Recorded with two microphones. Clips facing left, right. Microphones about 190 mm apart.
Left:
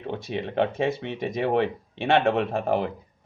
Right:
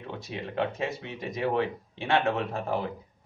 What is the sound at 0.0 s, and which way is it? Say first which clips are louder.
Speech: left 6 dB; 65° left (ahead or behind).